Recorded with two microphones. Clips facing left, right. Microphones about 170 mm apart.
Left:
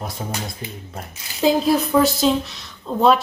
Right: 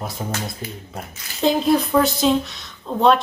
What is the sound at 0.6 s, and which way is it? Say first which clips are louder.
Speech: right 1 dB; 20° left (ahead or behind).